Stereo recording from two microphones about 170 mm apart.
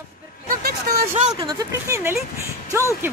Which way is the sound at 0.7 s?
65° right (ahead or behind).